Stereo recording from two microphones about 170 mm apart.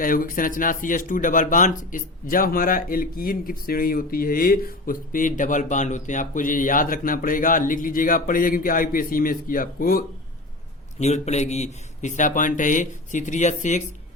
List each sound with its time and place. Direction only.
0.0 s speech: 55° left (ahead or behind)
11.0 s speech: 40° left (ahead or behind)